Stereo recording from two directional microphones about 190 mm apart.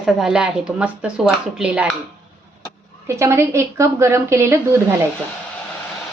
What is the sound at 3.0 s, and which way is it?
A woman's voice, 15° right (ahead or behind).